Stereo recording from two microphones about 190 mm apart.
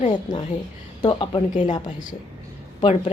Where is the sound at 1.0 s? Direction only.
25° left (ahead or behind).